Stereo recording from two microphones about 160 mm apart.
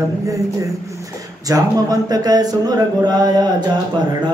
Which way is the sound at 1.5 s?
25° right (ahead or behind).